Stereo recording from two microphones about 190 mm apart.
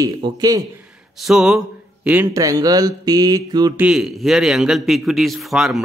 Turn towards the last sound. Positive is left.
turn(degrees=0)  # may be behind; listen again after turning